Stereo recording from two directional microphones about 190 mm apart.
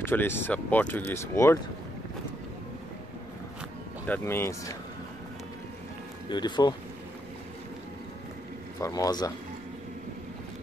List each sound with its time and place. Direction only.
0.0 s speech: 10° left (ahead or behind)
4.1 s speech: 10° left (ahead or behind)
6.2 s speech: 25° left (ahead or behind)
8.8 s speech: 20° left (ahead or behind)